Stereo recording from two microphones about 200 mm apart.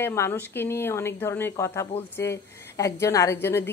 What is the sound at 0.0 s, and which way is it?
A woman's voice, 10° left (ahead or behind).